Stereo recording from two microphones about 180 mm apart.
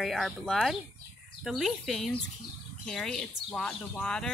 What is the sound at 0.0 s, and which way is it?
Speech, centre (ahead or behind).